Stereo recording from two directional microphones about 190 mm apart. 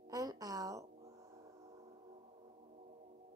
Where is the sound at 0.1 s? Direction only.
20° right (ahead or behind).